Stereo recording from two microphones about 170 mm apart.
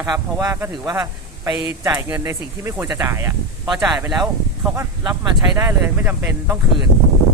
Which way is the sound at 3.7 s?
Centre (ahead or behind).